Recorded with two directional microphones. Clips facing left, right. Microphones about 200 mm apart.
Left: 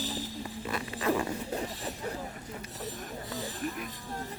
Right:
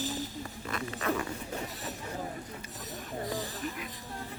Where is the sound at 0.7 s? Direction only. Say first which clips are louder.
Left 2 dB; 25° left (ahead or behind).